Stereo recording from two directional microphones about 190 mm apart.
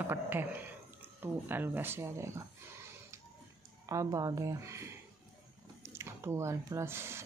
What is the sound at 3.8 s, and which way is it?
Speech, 15° right (ahead or behind).